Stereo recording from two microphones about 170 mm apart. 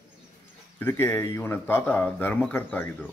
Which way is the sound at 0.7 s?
10° left (ahead or behind).